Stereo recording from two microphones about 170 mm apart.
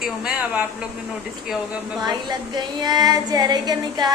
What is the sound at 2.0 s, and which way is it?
Female singing, 25° right (ahead or behind).